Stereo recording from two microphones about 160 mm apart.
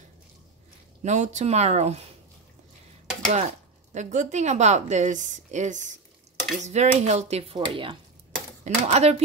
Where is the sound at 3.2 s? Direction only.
50° right (ahead or behind); by 8.0 s 35° right (ahead or behind).